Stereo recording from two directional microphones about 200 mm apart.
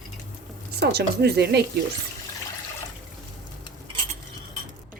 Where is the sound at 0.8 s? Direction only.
55° right (ahead or behind).